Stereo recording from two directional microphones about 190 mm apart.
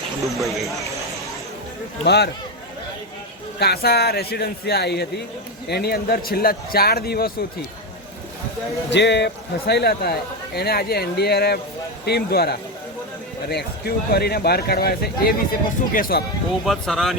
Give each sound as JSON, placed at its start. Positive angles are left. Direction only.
{"t": 0.3, "sound": "speech", "side_deg": 0}
{"t": 2.0, "sound": "a man's voice", "side_deg": 60}
{"t": 3.6, "sound": "a man's voice", "side_deg": 55}
{"t": 8.9, "sound": "a man's voice", "side_deg": 65}
{"t": 16.6, "sound": "speech", "side_deg": 0}